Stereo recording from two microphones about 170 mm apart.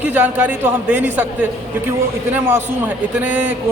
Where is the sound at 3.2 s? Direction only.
10° right (ahead or behind).